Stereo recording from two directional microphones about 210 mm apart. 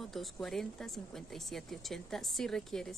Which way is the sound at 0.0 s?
Centre (ahead or behind).